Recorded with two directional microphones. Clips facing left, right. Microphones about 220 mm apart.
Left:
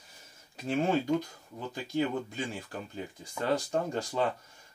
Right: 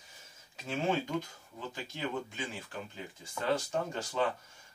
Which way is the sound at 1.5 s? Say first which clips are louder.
Left 10 dB; 40° left (ahead or behind).